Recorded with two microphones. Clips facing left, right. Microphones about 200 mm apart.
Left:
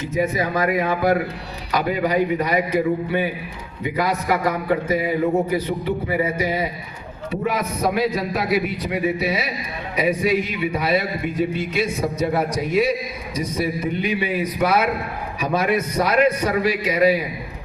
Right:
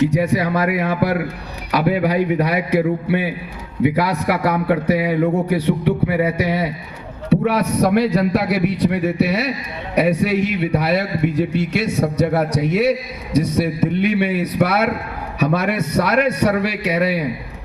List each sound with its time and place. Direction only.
0.0 s a man's voice: 70° right (ahead or behind)